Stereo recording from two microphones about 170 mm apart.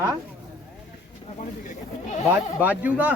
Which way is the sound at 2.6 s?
10° right (ahead or behind).